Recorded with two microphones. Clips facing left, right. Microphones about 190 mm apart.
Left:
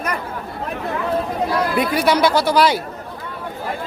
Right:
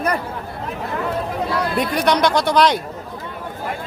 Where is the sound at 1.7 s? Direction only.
5° left (ahead or behind).